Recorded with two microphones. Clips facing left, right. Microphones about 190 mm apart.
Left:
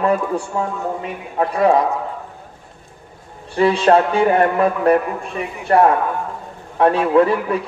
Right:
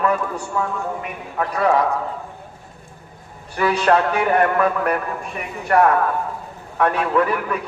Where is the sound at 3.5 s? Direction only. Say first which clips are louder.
Left 4 dB; 25° left (ahead or behind).